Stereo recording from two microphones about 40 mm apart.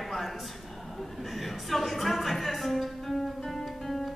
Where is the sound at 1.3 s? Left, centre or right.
Centre.